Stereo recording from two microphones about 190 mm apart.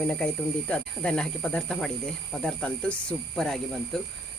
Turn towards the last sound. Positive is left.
turn(degrees=5)  # may be behind; listen again after turning